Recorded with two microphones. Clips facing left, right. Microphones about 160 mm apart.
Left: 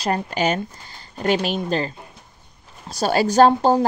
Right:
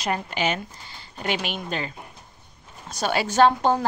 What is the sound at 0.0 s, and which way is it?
A woman's voice, 40° left (ahead or behind).